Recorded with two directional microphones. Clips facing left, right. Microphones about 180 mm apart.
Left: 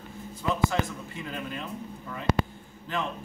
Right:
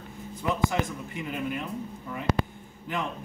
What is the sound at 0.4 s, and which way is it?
A man's voice, 15° right (ahead or behind).